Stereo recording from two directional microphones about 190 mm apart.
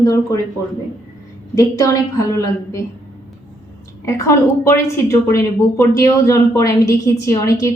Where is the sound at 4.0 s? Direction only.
15° left (ahead or behind).